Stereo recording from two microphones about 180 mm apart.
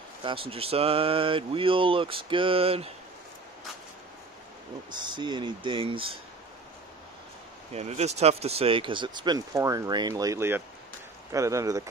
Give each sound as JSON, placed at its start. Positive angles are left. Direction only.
{"t": 0.2, "sound": "speech", "side_deg": -30}
{"t": 4.9, "sound": "speech", "side_deg": -25}
{"t": 7.7, "sound": "speech", "side_deg": -40}